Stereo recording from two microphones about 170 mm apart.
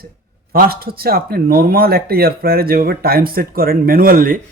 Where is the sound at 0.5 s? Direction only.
60° right (ahead or behind).